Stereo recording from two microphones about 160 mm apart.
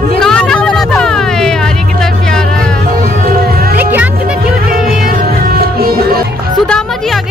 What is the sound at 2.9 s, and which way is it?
Music, 65° right (ahead or behind).